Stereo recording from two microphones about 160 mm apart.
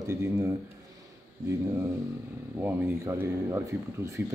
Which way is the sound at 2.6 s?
15° right (ahead or behind).